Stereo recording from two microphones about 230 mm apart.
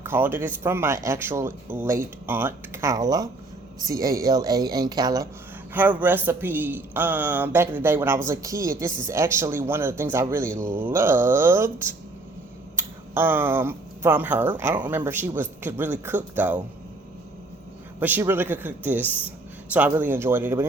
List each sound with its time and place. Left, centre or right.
0.0 s speech: centre
18.0 s speech: centre